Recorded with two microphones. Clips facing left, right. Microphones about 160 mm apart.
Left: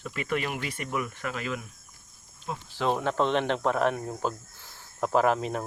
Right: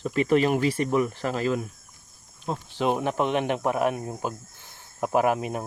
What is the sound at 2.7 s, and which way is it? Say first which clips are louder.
Speech: right 1 dB; 15° right (ahead or behind).